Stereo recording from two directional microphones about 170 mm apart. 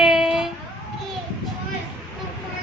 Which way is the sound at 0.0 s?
5° right (ahead or behind).